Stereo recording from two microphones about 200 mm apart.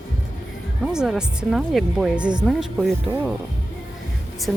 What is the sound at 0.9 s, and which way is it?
Speech, 5° right (ahead or behind).